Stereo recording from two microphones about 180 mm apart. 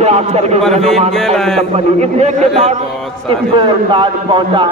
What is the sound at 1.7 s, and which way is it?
A man's voice, 40° right (ahead or behind).